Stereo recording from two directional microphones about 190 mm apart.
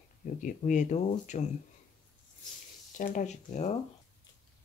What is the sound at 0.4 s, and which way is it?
Speech, 45° left (ahead or behind).